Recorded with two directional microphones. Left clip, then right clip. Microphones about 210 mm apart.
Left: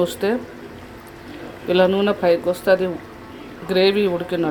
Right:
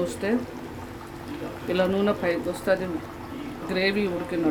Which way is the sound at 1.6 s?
15° left (ahead or behind).